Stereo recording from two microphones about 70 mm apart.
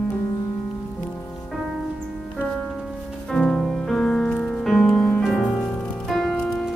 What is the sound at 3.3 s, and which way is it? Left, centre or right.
Music, centre.